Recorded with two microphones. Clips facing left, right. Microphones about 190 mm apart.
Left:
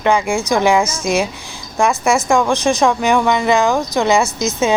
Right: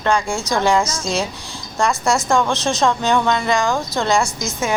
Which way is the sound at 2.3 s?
15° left (ahead or behind).